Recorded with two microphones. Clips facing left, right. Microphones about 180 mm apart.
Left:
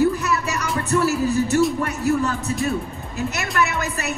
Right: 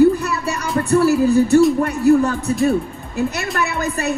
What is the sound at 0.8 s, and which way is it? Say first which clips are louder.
Speech: right 6 dB; 35° right (ahead or behind).